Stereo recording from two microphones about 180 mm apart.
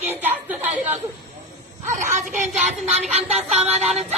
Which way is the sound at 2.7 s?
40° right (ahead or behind).